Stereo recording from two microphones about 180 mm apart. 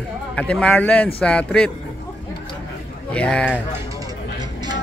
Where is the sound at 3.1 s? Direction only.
5° left (ahead or behind).